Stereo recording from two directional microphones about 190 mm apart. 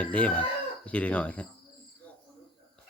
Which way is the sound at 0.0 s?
5° left (ahead or behind).